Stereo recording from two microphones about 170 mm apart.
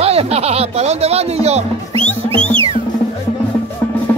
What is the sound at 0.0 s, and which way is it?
Speech, 35° right (ahead or behind).